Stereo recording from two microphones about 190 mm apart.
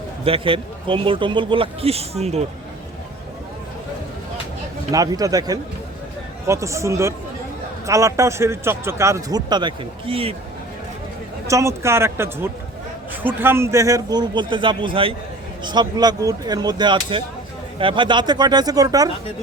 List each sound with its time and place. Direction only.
0.3 s a man's voice: 30° right (ahead or behind)
4.9 s a man's voice: 20° right (ahead or behind)
11.4 s a man's voice: 15° right (ahead or behind)